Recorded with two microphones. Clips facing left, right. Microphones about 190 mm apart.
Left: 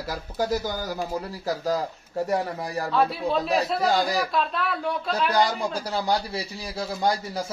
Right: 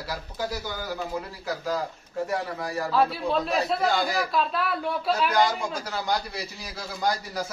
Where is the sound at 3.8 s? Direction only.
40° left (ahead or behind).